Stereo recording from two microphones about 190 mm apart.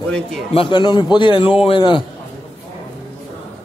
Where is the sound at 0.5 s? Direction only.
25° left (ahead or behind).